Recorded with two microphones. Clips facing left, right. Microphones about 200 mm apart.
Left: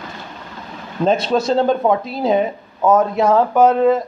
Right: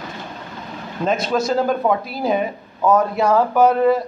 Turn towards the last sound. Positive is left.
turn(degrees=20)  # may be behind; listen again after turning